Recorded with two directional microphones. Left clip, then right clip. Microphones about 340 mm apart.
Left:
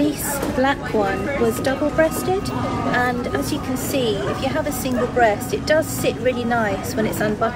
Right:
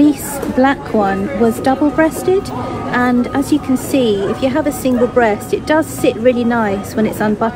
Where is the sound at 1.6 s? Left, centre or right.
Centre.